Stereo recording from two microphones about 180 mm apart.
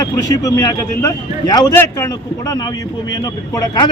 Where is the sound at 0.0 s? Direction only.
20° left (ahead or behind).